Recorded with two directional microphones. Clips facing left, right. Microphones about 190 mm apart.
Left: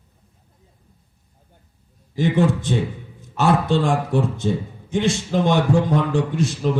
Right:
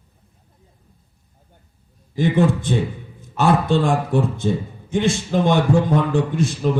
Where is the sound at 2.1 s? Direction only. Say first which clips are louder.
Right 1 dB; 55° right (ahead or behind).